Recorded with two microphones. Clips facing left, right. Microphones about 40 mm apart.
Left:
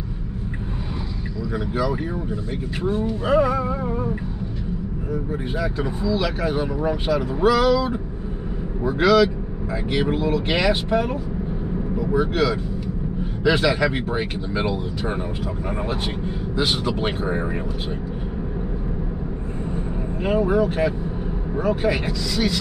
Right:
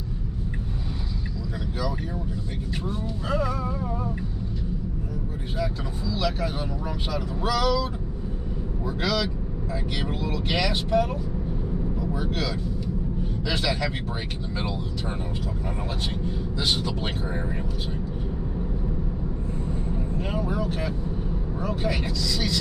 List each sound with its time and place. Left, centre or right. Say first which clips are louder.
2.8 s speech: left 11 dB; left
5.6 s speech: left 3 dB; centre
9.0 s speech: left 11 dB; centre
16.5 s speech: left 5 dB; left
17.2 s speech: left 6 dB; left
20.2 s speech: left 11 dB; left